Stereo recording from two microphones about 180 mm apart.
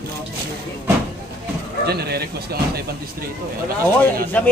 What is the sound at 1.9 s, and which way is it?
Speech, 60° right (ahead or behind).